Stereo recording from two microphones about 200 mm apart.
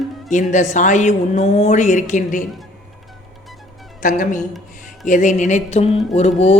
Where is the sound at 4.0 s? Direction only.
40° left (ahead or behind).